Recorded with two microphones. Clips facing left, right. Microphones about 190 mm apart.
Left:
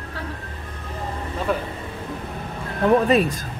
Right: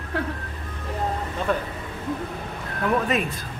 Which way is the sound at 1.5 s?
5° left (ahead or behind).